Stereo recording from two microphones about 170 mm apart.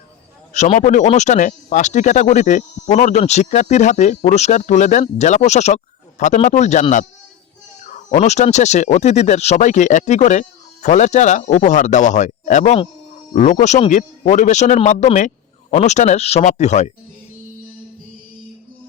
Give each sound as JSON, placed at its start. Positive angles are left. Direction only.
{"t": 0.5, "sound": "speech", "side_deg": 45}
{"t": 7.9, "sound": "speech", "side_deg": 45}